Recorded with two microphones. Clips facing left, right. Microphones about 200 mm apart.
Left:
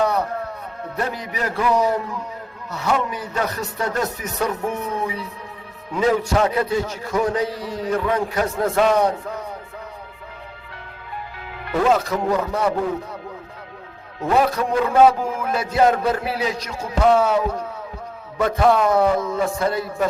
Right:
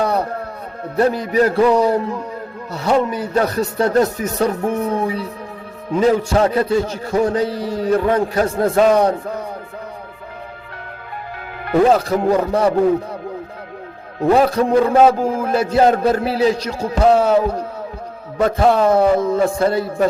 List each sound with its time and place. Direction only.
0.0 s music: 35° right (ahead or behind)
0.9 s a man's voice: 30° right (ahead or behind)
11.8 s a man's voice: 35° right (ahead or behind)
14.3 s a man's voice: 35° right (ahead or behind)